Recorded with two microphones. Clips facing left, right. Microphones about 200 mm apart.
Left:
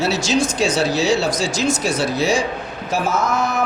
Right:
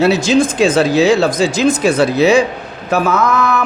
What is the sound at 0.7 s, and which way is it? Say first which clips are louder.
Speech: right 7 dB; 90° right.